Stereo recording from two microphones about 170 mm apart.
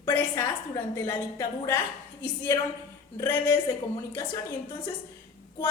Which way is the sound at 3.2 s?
15° left (ahead or behind).